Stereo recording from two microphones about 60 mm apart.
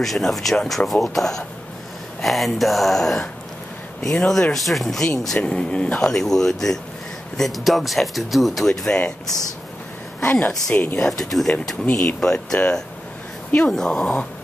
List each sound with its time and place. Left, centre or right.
0.0 s speech: centre
5.4 s speech: centre
10.2 s speech: left
11.0 s speech: centre
11.8 s speech: centre
13.6 s speech: centre